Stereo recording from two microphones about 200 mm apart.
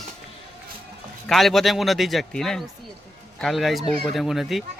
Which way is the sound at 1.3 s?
Centre (ahead or behind).